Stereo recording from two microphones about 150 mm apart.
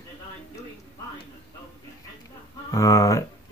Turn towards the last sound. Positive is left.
turn(degrees=20)  # may be behind; listen again after turning